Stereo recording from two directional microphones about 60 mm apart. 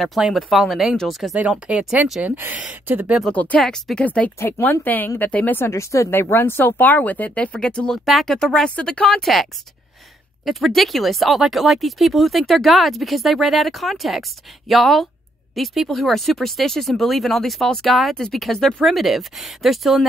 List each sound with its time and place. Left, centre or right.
0.0 s speech: centre
1.5 s speech: centre
2.2 s speech: right
3.3 s speech: left
3.6 s speech: centre
4.0 s speech: left
4.4 s speech: left
5.7 s speech: left
6.0 s speech: left; by 8.0 s centre
8.0 s speech: centre
8.4 s speech: centre